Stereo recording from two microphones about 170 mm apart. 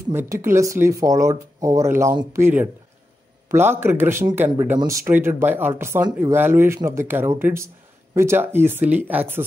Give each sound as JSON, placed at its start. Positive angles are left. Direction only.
{"t": 0.1, "sound": "speech", "side_deg": -15}